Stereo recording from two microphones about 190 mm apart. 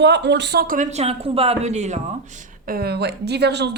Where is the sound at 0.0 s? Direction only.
65° right (ahead or behind); by 2.0 s 35° right (ahead or behind).